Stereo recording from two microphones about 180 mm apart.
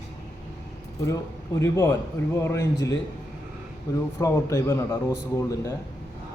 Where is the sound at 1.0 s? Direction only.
20° left (ahead or behind).